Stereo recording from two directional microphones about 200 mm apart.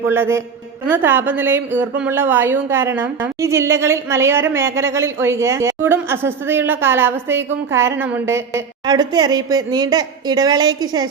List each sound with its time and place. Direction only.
0.1 s a woman's voice: 15° right (ahead or behind)